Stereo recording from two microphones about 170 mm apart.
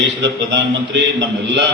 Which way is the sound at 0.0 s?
90° right.